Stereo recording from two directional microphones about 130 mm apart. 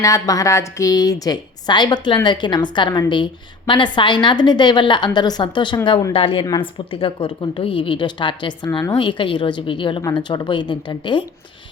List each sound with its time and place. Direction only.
0.0 s a woman's voice: 25° left (ahead or behind)